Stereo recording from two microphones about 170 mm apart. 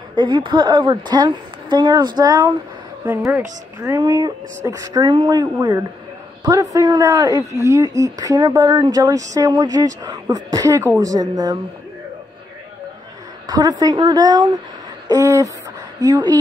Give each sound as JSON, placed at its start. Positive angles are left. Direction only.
{"t": 0.1, "sound": "speech", "side_deg": -30}
{"t": 13.5, "sound": "speech", "side_deg": -25}